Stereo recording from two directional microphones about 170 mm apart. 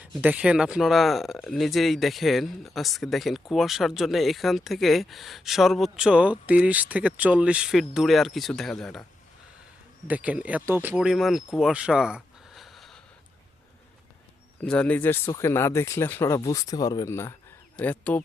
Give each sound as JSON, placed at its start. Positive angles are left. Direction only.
{"t": 0.2, "sound": "speech", "side_deg": -10}
{"t": 10.1, "sound": "speech", "side_deg": -10}
{"t": 14.6, "sound": "speech", "side_deg": 5}